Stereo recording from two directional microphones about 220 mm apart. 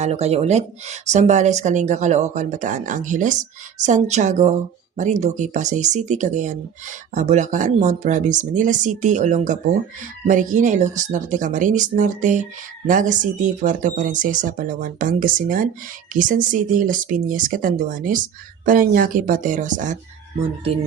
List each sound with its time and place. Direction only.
0.0 s speech: 30° right (ahead or behind)